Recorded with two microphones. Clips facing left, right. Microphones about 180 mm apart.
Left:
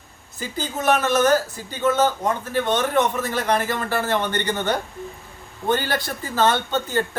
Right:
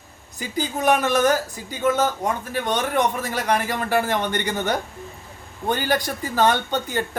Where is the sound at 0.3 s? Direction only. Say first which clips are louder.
Right 2 dB; 15° right (ahead or behind).